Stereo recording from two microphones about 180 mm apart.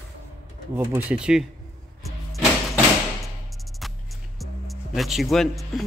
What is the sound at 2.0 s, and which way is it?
Music, centre (ahead or behind).